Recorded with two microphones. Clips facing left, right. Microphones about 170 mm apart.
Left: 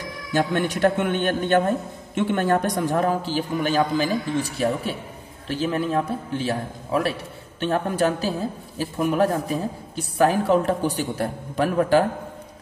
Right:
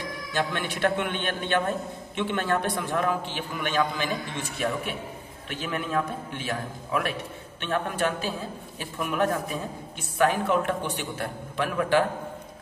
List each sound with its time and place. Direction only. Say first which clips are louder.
0.3 s a man's voice: left 7 dB; 45° left (ahead or behind)